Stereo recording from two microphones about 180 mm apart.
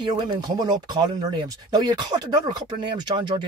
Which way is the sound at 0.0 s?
25° right (ahead or behind).